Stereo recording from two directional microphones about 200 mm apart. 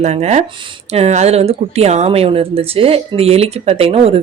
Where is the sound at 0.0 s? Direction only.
35° right (ahead or behind).